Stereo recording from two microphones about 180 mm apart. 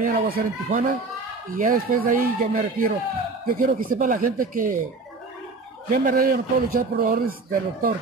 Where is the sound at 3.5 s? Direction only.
50° right (ahead or behind).